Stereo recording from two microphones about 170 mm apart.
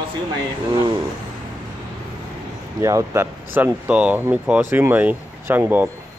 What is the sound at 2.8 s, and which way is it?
Speech, 15° right (ahead or behind).